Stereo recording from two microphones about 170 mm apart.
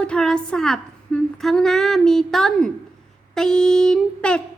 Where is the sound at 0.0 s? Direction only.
5° left (ahead or behind).